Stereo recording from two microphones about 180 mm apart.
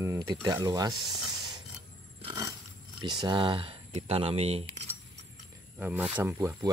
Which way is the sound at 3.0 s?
25° right (ahead or behind).